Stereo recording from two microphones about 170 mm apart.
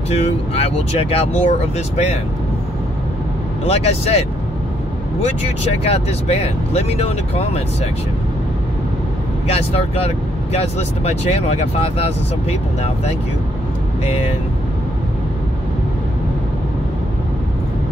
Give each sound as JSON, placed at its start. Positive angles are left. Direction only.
{"t": 0.1, "sound": "speech", "side_deg": 40}
{"t": 3.6, "sound": "speech", "side_deg": 35}
{"t": 5.7, "sound": "speech", "side_deg": 35}
{"t": 9.5, "sound": "speech", "side_deg": 35}
{"t": 14.0, "sound": "speech", "side_deg": 35}